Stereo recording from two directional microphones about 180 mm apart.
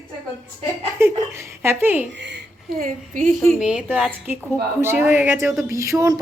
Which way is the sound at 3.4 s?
5° right (ahead or behind).